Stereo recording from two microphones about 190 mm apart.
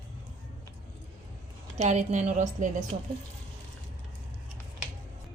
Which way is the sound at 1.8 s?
35° right (ahead or behind).